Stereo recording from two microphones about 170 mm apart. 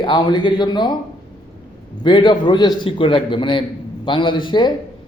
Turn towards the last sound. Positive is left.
turn(degrees=30)  # may be behind; listen again after turning